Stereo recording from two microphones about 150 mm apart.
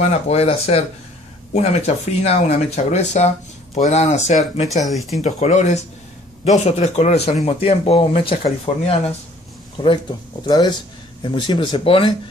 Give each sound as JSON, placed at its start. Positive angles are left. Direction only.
{"t": 0.0, "sound": "speech", "side_deg": 45}
{"t": 4.6, "sound": "speech", "side_deg": 0}
{"t": 5.2, "sound": "speech", "side_deg": 50}